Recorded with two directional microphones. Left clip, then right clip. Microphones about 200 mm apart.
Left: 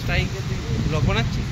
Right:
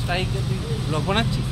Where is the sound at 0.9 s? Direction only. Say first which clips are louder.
Right 2 dB; 45° right (ahead or behind).